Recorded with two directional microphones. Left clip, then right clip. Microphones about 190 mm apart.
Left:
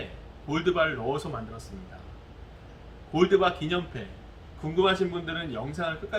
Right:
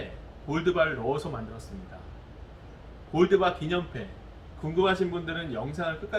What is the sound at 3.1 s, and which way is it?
A man's voice, 5° left (ahead or behind).